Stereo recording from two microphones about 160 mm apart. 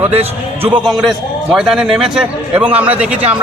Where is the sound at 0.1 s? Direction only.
40° right (ahead or behind).